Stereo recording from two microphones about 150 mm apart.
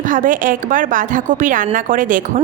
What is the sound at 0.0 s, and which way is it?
A woman's voice, 60° right (ahead or behind).